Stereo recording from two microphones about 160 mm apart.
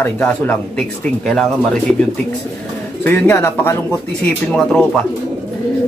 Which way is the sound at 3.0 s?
10° left (ahead or behind).